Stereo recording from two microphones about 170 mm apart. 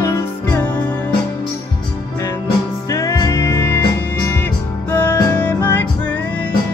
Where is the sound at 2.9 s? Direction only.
20° left (ahead or behind).